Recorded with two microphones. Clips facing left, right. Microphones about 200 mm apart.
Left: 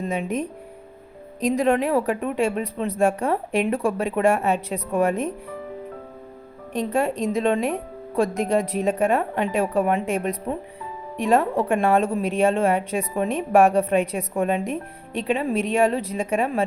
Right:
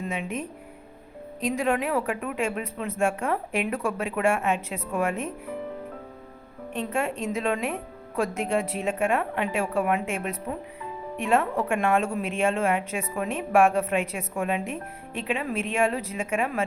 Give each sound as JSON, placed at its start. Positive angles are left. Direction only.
{"t": 0.0, "sound": "speech", "side_deg": 40}
{"t": 6.7, "sound": "speech", "side_deg": 35}